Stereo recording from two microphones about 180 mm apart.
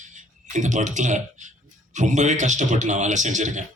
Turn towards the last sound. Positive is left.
turn(degrees=-40)  # may be behind; listen again after turning